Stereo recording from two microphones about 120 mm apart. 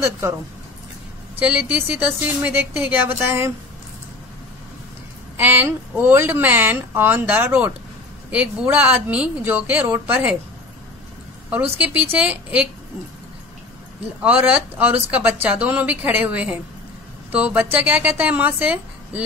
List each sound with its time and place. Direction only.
1.4 s speech: 10° right (ahead or behind)
5.4 s speech: 20° right (ahead or behind)
11.8 s speech: 15° right (ahead or behind)
14.2 s speech: 15° right (ahead or behind)